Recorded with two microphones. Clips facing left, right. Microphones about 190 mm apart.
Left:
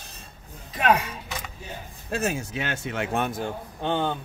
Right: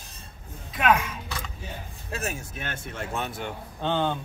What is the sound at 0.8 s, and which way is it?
Speech, 35° left (ahead or behind).